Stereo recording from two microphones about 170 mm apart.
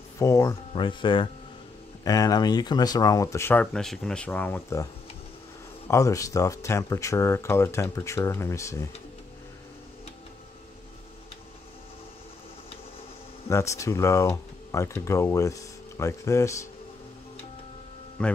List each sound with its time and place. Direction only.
0.2 s speech: 20° left (ahead or behind)
3.7 s speech: centre (ahead or behind)
5.9 s speech: 20° left (ahead or behind)
13.5 s speech: 15° left (ahead or behind)
18.2 s speech: 5° left (ahead or behind)